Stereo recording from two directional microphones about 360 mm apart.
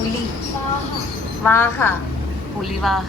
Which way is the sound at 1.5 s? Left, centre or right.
Centre.